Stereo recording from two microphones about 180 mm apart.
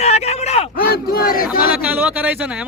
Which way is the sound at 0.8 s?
55° left (ahead or behind).